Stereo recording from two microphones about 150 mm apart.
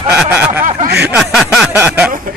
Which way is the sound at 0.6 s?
60° right (ahead or behind).